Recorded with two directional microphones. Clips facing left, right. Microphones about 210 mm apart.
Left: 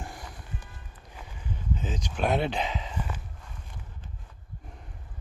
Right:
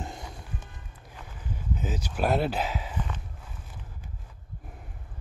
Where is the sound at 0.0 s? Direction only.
20° right (ahead or behind).